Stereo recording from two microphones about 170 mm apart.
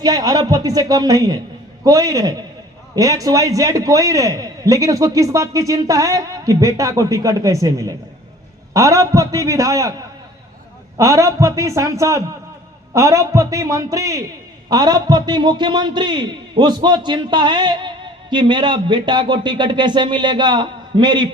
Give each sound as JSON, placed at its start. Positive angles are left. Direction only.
{"t": 0.0, "sound": "a man's voice", "side_deg": -25}
{"t": 10.9, "sound": "a man's voice", "side_deg": -20}